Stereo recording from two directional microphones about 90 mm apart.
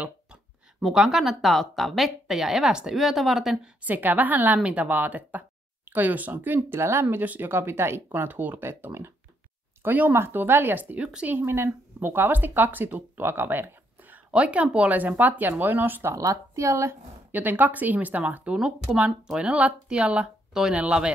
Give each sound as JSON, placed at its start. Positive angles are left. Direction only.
{"t": 0.0, "sound": "a sound", "side_deg": -10}
{"t": 0.8, "sound": "speech", "side_deg": -5}
{"t": 3.8, "sound": "speech", "side_deg": -20}
{"t": 17.3, "sound": "speech", "side_deg": -20}